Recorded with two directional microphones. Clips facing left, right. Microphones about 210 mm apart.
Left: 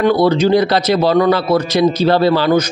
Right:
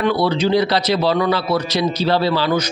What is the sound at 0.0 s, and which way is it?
Speech, 45° left (ahead or behind).